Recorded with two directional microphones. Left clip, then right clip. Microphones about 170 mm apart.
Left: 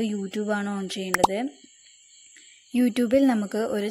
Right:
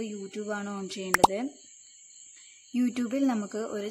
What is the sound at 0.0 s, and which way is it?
Speech, 25° left (ahead or behind).